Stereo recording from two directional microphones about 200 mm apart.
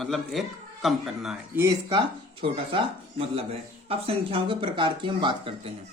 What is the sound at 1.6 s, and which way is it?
Speech, 20° right (ahead or behind).